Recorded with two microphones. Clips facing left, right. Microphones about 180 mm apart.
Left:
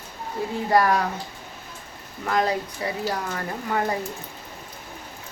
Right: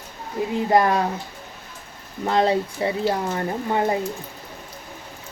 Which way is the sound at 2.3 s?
25° right (ahead or behind).